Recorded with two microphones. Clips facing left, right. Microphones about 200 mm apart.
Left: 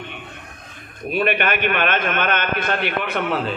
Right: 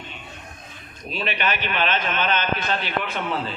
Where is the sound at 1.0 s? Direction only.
55° left (ahead or behind).